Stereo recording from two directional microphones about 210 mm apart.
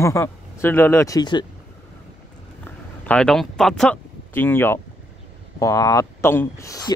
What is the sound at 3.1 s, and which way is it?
Speech, centre (ahead or behind).